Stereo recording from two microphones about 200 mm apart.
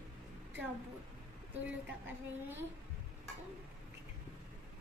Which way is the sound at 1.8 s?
10° right (ahead or behind).